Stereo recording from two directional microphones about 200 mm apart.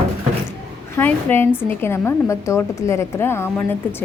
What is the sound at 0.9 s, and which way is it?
A woman's voice, 10° left (ahead or behind).